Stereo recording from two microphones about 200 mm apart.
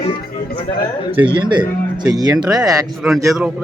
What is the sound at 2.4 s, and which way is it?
Speech, 5° right (ahead or behind).